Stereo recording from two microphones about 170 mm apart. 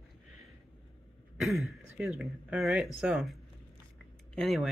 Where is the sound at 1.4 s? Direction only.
Centre (ahead or behind).